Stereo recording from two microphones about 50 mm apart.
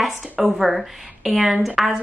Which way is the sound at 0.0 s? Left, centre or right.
Centre.